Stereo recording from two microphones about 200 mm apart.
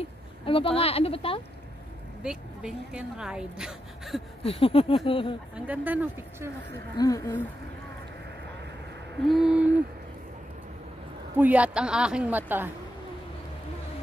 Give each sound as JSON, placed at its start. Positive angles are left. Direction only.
{"t": 0.0, "sound": "speech", "side_deg": 25}
{"t": 2.2, "sound": "speech", "side_deg": -5}
{"t": 4.5, "sound": "speech", "side_deg": 30}
{"t": 5.7, "sound": "a woman's voice", "side_deg": -10}
{"t": 7.0, "sound": "speech", "side_deg": 20}
{"t": 9.2, "sound": "speech", "side_deg": 0}
{"t": 11.3, "sound": "a woman's voice", "side_deg": -10}